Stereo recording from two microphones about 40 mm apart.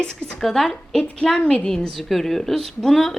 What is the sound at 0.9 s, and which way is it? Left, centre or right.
Speech, centre.